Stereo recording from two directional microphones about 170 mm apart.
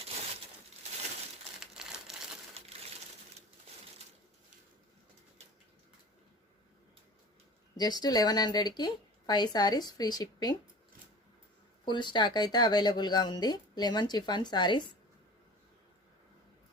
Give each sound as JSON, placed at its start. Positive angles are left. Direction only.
{"t": 1.5, "sound": "crumpling", "side_deg": -5}
{"t": 7.8, "sound": "speech", "side_deg": 25}
{"t": 11.9, "sound": "speech", "side_deg": 25}